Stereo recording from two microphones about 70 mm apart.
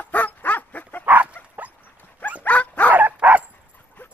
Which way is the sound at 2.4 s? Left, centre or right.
Left.